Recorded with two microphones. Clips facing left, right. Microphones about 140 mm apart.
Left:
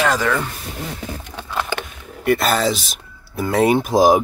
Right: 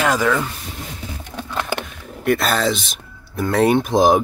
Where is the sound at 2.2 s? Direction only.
Centre (ahead or behind).